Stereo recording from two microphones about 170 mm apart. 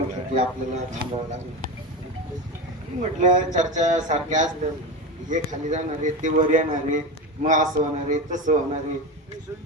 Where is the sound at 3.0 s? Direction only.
45° right (ahead or behind).